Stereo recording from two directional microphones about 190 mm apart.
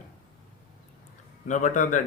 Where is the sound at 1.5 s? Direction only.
45° left (ahead or behind).